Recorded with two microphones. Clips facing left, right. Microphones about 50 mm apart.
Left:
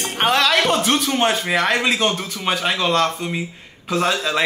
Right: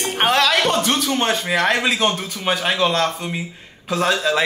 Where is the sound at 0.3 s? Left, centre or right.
Centre.